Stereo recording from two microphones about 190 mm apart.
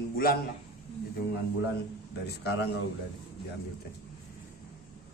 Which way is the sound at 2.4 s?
60° left (ahead or behind).